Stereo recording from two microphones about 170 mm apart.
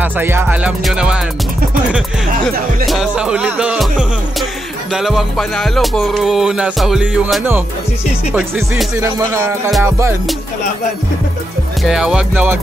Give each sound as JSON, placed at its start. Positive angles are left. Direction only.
{"t": 0.0, "sound": "music", "side_deg": -15}
{"t": 2.9, "sound": "music", "side_deg": -5}
{"t": 11.8, "sound": "music", "side_deg": -5}